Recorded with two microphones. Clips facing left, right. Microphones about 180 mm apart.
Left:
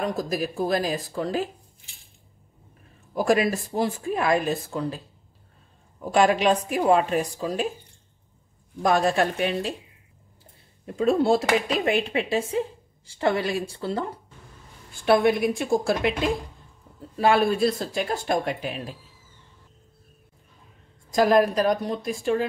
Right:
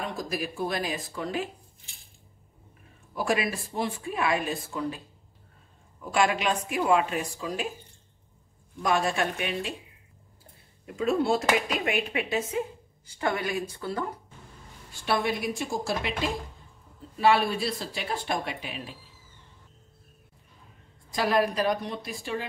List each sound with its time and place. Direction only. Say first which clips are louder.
0.0 s speech: left 6 dB; 40° left (ahead or behind)
3.2 s speech: left 6 dB; 40° left (ahead or behind)
8.8 s speech: left 5 dB; 35° left (ahead or behind)
11.0 s speech: left 5 dB; 35° left (ahead or behind)
15.0 s a woman's voice: left 8 dB; 55° left (ahead or behind)
17.2 s speech: left 4 dB; 45° left (ahead or behind)
21.1 s speech: left 6 dB; 45° left (ahead or behind)